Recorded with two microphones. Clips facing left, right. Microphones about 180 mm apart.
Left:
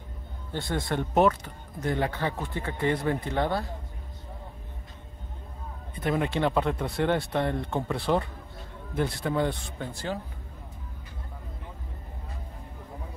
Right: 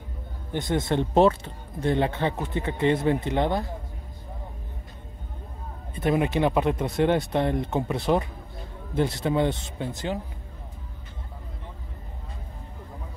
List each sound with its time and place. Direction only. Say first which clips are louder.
0.5 s speech: right 5 dB; 20° right (ahead or behind)
5.9 s speech: right 4 dB; 20° right (ahead or behind)